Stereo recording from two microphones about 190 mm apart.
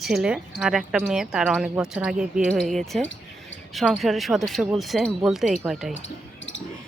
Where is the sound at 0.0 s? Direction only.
Centre (ahead or behind).